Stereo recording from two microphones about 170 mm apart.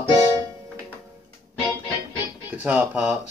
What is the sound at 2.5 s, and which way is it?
Speech, 10° right (ahead or behind).